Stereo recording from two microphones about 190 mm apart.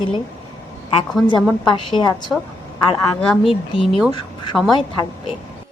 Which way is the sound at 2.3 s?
Centre (ahead or behind).